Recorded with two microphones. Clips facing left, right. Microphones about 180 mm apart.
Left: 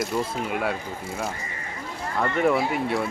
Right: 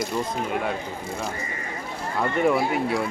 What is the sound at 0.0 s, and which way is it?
Speech, 5° left (ahead or behind).